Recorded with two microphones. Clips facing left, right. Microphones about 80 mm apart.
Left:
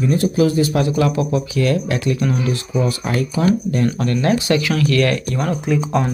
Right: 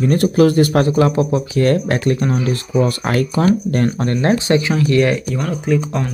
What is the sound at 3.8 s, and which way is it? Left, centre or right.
Speech, right.